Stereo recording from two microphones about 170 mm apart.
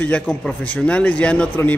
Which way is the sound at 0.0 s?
5° left (ahead or behind).